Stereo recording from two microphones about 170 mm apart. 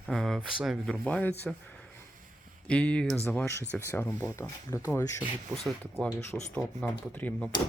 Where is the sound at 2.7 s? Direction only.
5° left (ahead or behind).